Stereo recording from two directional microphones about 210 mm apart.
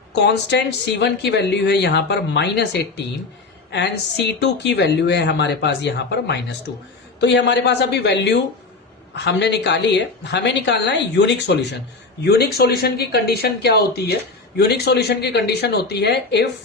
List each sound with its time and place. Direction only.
0.1 s speech: 55° left (ahead or behind)